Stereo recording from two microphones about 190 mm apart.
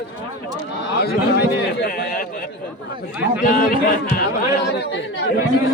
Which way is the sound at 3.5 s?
50° left (ahead or behind).